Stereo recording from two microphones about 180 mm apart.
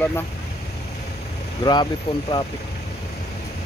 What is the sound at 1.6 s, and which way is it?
Speech, 25° left (ahead or behind).